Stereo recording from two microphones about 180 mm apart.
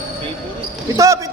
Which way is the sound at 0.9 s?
15° right (ahead or behind).